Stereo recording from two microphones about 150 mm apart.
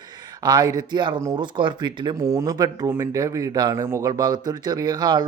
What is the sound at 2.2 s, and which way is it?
Speech, 20° right (ahead or behind).